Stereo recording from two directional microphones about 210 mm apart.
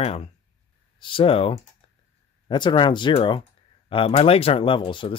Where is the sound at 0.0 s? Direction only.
30° left (ahead or behind).